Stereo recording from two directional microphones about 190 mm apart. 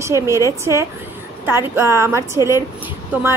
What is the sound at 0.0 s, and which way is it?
A woman's voice, 15° right (ahead or behind).